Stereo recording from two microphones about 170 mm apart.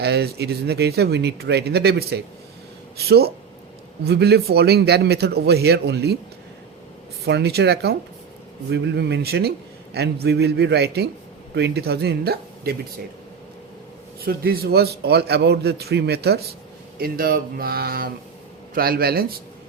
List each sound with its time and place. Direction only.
0.0 s speech: 75° right (ahead or behind)
7.3 s speech: 75° right (ahead or behind)
8.7 s speech: 85° right; by 12.7 s 70° right (ahead or behind)
14.3 s speech: 65° right (ahead or behind)